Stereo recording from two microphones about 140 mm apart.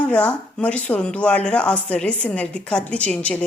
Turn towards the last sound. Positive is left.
turn(degrees=5)  # may be behind; listen again after turning